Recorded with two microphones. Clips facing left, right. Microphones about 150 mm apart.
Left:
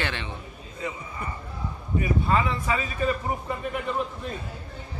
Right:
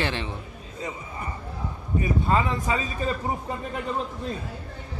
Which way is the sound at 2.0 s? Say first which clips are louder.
Right 1 dB; 25° right (ahead or behind).